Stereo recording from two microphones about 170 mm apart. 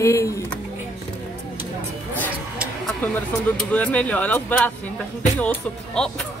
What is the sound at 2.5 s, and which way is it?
Speech, 5° left (ahead or behind).